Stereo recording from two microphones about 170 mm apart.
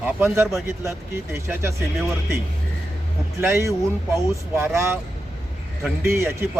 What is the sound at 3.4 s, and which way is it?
Speech, 15° right (ahead or behind).